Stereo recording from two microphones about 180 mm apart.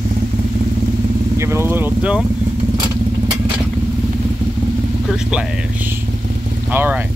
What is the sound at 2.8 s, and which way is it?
Vehicle, 25° right (ahead or behind).